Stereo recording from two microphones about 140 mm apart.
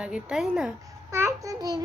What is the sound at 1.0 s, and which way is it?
Babbling, 20° right (ahead or behind).